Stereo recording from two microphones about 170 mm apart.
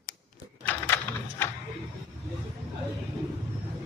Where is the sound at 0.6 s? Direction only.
10° left (ahead or behind).